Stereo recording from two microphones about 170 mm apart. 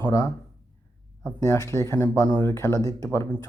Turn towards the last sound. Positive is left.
turn(degrees=20)  # may be behind; listen again after turning